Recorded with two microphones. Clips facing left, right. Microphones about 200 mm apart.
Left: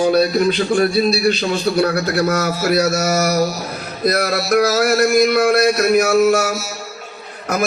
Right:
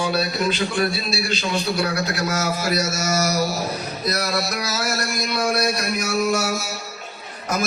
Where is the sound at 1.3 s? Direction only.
55° left (ahead or behind).